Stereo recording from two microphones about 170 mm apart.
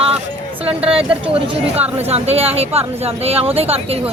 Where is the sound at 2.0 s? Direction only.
35° right (ahead or behind).